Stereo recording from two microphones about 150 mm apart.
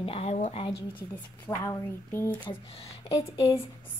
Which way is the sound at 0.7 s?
15° left (ahead or behind).